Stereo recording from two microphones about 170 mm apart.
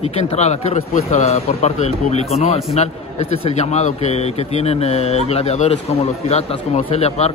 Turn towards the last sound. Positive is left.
turn(degrees=40)  # may be behind; listen again after turning